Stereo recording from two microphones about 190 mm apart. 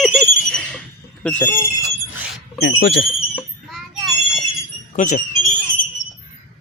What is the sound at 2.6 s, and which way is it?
Speech, 60° left (ahead or behind).